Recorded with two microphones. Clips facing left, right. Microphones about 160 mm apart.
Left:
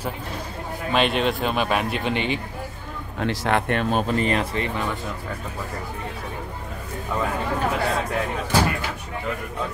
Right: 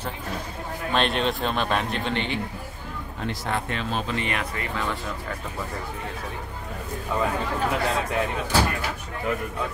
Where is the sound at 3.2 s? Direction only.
70° left (ahead or behind); by 4.7 s 30° left (ahead or behind).